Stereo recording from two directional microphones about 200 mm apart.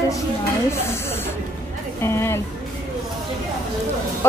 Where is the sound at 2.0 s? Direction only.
10° left (ahead or behind).